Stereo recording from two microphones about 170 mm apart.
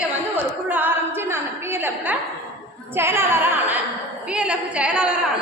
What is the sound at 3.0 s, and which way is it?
Singing, 15° right (ahead or behind).